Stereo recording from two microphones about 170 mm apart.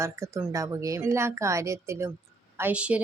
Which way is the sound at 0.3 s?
15° right (ahead or behind).